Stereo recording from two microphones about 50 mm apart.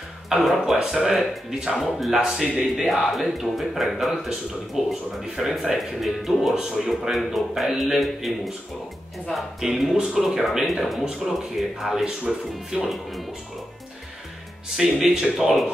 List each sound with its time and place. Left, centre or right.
0.3 s speech: centre
2.8 s speech: centre
14.8 s speech: centre